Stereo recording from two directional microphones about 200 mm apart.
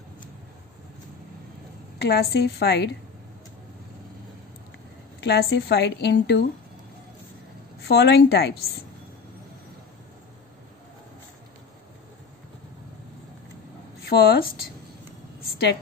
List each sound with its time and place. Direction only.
2.0 s a woman's voice: 55° left (ahead or behind)
5.2 s a woman's voice: 55° left (ahead or behind)
7.8 s a woman's voice: 55° left (ahead or behind)
14.0 s a woman's voice: 50° left (ahead or behind)